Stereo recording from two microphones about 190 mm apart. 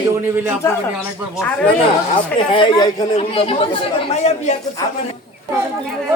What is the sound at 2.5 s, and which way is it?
Speech, 25° left (ahead or behind).